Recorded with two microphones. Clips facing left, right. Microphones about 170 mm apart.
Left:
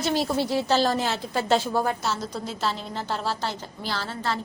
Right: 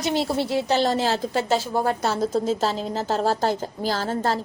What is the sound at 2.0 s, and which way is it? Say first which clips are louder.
A woman's voice: right 7 dB; 55° right (ahead or behind).